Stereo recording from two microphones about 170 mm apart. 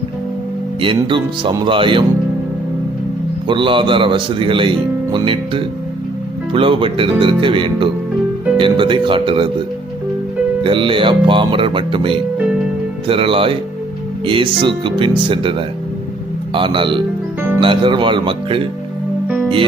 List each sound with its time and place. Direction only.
0.8 s speech: 30° right (ahead or behind)
3.4 s speech: 30° right (ahead or behind)
10.6 s speech: 30° right (ahead or behind)